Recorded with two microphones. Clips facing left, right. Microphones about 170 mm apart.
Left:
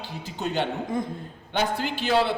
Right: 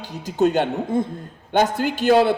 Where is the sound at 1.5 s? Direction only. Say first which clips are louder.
Right 7 dB; 50° right (ahead or behind).